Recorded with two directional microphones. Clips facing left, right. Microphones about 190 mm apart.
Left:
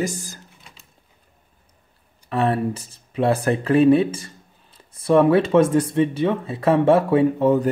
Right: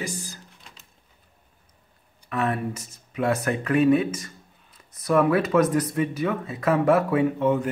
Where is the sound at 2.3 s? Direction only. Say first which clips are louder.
Left 5 dB; 30° left (ahead or behind).